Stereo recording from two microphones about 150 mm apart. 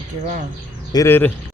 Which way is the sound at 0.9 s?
20° left (ahead or behind).